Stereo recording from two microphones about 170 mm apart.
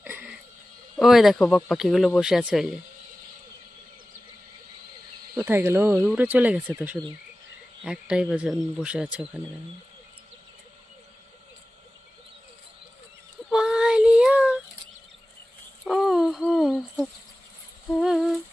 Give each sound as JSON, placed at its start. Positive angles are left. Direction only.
{"t": 0.0, "sound": "a sound", "side_deg": -10}
{"t": 0.9, "sound": "speech", "side_deg": 0}
{"t": 5.5, "sound": "speech", "side_deg": -15}
{"t": 13.5, "sound": "child singing", "side_deg": -5}
{"t": 15.8, "sound": "owl", "side_deg": 0}
{"t": 18.0, "sound": "speech", "side_deg": 0}